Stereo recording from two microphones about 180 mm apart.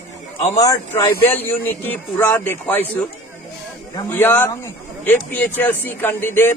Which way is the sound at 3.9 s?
10° left (ahead or behind).